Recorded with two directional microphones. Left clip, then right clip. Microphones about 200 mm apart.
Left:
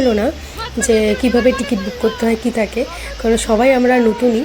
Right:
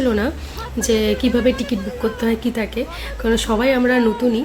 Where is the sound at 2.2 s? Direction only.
5° left (ahead or behind).